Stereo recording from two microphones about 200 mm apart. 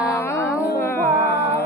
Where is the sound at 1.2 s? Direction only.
55° left (ahead or behind).